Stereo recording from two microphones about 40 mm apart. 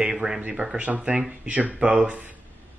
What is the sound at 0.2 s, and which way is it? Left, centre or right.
Speech, right.